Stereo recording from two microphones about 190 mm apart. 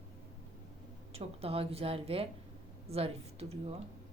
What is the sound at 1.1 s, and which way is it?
A woman's voice, 30° right (ahead or behind).